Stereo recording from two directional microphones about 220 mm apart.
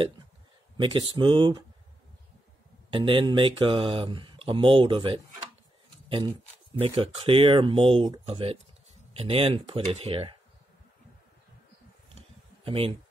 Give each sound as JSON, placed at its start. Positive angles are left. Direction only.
{"t": 0.7, "sound": "speech", "side_deg": -20}
{"t": 2.9, "sound": "speech", "side_deg": -20}
{"t": 12.6, "sound": "speech", "side_deg": -25}